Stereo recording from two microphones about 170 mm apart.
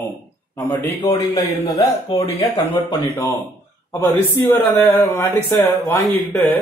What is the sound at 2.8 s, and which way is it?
A man's voice, 20° left (ahead or behind).